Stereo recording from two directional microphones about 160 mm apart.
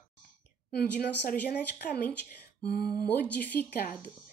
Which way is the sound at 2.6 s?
80° left.